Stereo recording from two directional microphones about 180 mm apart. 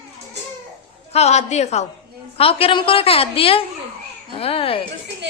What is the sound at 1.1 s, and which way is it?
A woman's voice, 35° left (ahead or behind).